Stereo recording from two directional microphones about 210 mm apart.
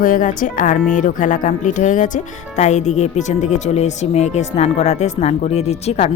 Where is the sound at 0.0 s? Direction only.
40° left (ahead or behind).